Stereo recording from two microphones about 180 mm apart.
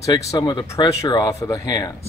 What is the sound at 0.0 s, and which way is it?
Speech, 20° left (ahead or behind).